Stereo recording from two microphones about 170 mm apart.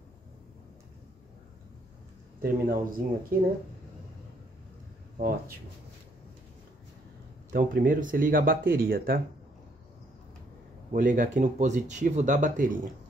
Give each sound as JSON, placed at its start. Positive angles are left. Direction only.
{"t": 2.4, "sound": "speech", "side_deg": -60}
{"t": 7.5, "sound": "speech", "side_deg": -55}
{"t": 10.9, "sound": "speech", "side_deg": -50}